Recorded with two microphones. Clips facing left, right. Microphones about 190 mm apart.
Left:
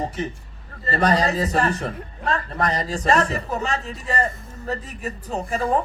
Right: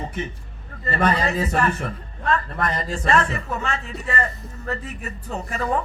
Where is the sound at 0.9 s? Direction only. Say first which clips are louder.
Left 2 dB; 35° left (ahead or behind).